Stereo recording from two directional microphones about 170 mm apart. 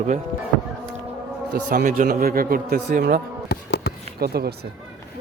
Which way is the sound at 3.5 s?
75° left (ahead or behind).